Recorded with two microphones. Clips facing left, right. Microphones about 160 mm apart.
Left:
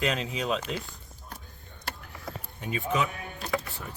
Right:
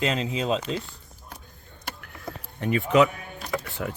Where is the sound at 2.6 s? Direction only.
75° right (ahead or behind).